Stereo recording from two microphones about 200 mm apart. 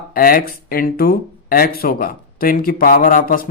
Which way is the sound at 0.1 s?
45° left (ahead or behind).